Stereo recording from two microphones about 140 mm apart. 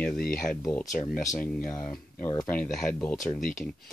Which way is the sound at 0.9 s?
70° left (ahead or behind).